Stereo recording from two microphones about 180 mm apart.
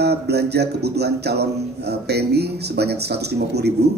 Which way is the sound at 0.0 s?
65° right (ahead or behind).